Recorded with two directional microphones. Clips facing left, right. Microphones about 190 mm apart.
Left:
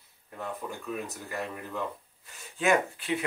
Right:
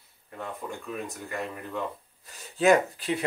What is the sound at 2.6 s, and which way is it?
Speech, 35° right (ahead or behind).